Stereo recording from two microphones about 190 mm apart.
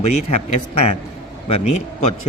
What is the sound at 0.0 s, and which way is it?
Speech, 35° left (ahead or behind).